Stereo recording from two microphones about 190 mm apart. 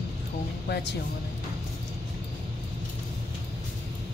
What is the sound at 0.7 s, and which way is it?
Speech, 65° left (ahead or behind).